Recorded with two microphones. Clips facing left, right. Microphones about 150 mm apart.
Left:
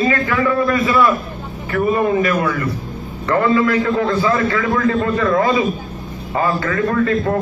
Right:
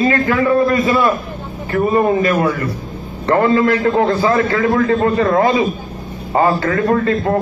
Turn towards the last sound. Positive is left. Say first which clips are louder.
# right 2 dB
turn(degrees=-35)  # may be behind; listen again after turning